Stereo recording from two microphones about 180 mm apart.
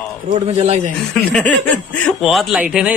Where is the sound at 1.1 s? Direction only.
5° left (ahead or behind).